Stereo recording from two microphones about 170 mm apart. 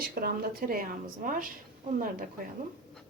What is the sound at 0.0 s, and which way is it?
A woman's voice, 60° right (ahead or behind).